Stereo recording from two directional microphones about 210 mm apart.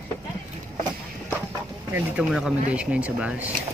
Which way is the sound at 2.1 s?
5° right (ahead or behind).